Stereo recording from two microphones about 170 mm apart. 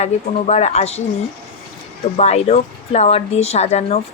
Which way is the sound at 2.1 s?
40° left (ahead or behind).